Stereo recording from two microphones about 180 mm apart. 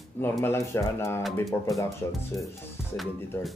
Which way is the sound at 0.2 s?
15° left (ahead or behind).